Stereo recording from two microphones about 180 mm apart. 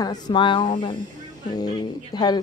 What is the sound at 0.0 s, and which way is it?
A woman's voice, 25° left (ahead or behind).